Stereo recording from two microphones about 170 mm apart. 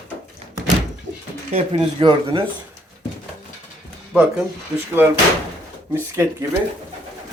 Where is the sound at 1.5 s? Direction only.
30° right (ahead or behind).